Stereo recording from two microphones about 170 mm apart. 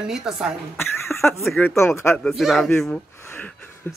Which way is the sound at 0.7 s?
15° left (ahead or behind).